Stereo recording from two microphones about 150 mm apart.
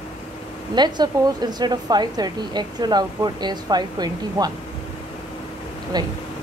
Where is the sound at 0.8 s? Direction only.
30° right (ahead or behind).